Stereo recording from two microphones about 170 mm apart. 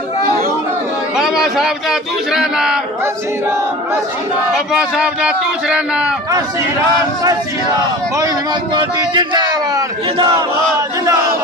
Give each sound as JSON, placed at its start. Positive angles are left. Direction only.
{"t": 1.1, "sound": "speech", "side_deg": 0}
{"t": 4.5, "sound": "speech", "side_deg": -5}
{"t": 8.7, "sound": "speech", "side_deg": -25}